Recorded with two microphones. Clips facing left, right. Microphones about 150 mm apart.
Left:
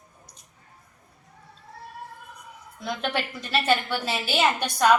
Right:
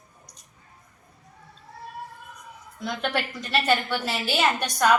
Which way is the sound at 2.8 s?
5° left (ahead or behind).